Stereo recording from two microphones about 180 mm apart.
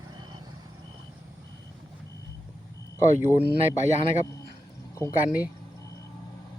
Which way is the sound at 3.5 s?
40° left (ahead or behind).